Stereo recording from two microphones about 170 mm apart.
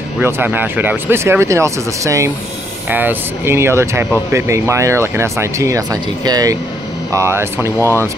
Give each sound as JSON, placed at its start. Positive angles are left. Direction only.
{"t": 0.2, "sound": "speech", "side_deg": -10}